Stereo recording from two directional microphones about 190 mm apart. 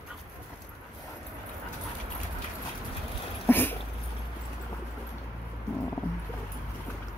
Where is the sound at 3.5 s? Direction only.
10° left (ahead or behind).